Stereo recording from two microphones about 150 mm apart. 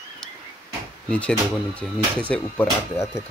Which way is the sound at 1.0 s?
10° left (ahead or behind).